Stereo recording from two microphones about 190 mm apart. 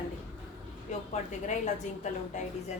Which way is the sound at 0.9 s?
40° left (ahead or behind).